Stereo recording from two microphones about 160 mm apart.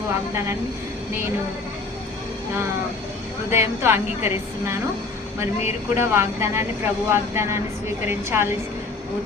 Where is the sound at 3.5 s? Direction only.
15° right (ahead or behind).